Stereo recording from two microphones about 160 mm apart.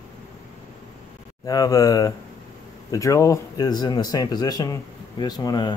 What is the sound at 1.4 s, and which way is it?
Speech, 20° left (ahead or behind).